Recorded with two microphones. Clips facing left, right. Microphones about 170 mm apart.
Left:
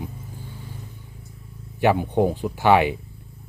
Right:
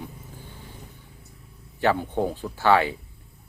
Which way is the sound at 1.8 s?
15° left (ahead or behind).